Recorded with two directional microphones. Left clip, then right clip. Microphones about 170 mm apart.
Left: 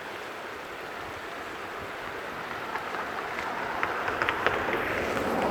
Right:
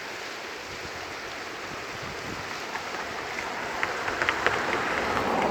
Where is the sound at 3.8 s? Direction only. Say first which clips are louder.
Right 1 dB; 30° right (ahead or behind).